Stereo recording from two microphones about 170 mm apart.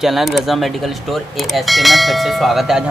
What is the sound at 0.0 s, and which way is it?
Speech, centre (ahead or behind).